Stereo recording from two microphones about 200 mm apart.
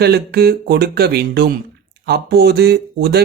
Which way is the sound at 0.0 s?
55° right (ahead or behind).